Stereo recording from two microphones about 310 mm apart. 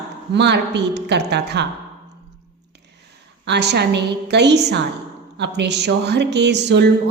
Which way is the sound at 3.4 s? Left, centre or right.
Right.